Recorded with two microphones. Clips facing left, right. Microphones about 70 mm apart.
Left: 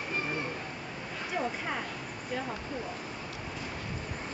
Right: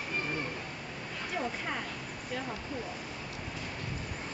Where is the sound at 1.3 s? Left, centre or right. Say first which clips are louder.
Left 2 dB; centre.